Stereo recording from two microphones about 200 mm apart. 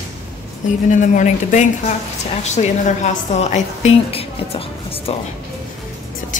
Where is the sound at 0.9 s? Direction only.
40° left (ahead or behind).